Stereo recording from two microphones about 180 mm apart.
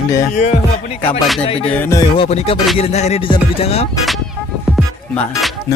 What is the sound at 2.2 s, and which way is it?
Music, 35° left (ahead or behind).